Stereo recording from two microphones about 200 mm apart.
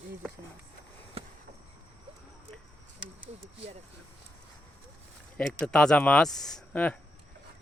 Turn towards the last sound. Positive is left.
turn(degrees=5)  # may be behind; listen again after turning